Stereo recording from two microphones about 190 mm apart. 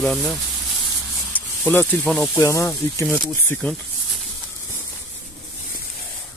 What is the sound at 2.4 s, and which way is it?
Speech, 15° left (ahead or behind).